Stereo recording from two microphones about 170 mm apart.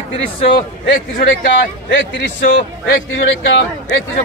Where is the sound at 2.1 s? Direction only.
85° left.